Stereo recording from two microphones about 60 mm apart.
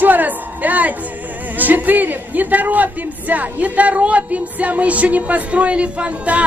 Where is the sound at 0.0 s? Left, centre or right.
Right.